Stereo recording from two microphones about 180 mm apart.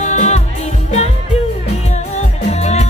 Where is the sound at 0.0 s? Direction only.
40° left (ahead or behind).